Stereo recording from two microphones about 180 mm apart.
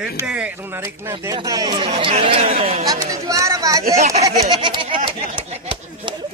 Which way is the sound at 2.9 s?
20° right (ahead or behind).